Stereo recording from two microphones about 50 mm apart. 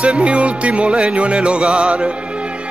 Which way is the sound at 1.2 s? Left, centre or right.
Right.